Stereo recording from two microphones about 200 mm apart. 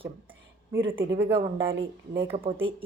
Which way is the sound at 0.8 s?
70° right (ahead or behind).